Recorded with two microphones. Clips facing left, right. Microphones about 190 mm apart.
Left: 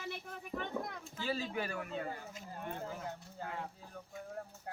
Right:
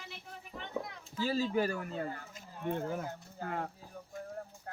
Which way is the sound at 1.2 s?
40° right (ahead or behind).